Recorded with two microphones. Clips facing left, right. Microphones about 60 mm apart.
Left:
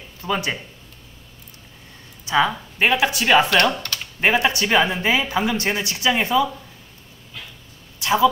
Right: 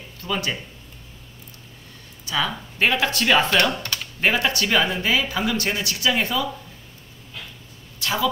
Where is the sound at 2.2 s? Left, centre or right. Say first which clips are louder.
Left 6 dB; left.